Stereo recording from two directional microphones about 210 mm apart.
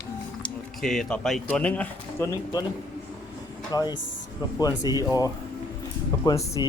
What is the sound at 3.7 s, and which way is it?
Speech, 15° left (ahead or behind).